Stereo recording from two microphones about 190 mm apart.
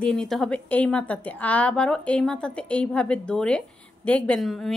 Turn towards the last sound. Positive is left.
turn(degrees=0)  # may be behind; listen again after turning